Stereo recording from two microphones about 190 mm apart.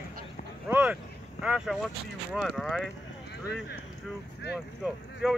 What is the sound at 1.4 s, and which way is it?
Speech, centre (ahead or behind).